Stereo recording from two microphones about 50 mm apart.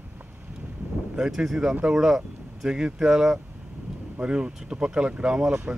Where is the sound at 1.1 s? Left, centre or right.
Centre.